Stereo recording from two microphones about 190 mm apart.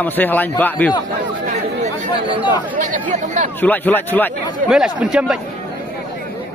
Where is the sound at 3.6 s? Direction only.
10° left (ahead or behind).